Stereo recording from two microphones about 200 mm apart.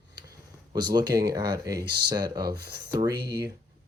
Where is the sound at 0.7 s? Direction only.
20° right (ahead or behind).